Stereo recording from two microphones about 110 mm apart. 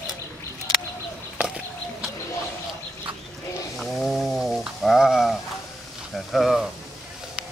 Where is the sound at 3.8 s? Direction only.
Centre (ahead or behind).